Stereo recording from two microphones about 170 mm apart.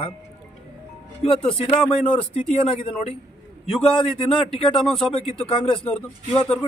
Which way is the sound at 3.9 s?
30° left (ahead or behind).